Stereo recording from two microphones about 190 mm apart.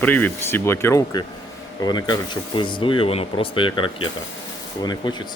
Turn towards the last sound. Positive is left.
turn(degrees=25)  # may be behind; listen again after turning